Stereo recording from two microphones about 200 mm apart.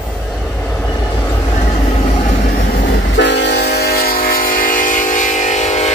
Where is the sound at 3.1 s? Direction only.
60° left (ahead or behind).